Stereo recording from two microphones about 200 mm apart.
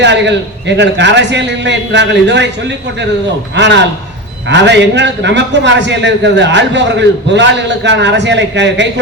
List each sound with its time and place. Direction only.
0.0 s a man's voice: 60° right (ahead or behind)